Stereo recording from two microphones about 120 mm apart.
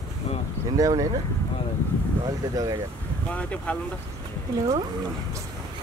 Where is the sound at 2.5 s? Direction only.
30° right (ahead or behind).